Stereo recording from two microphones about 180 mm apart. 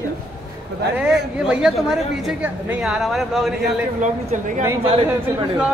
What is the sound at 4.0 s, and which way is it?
Speech, 45° right (ahead or behind).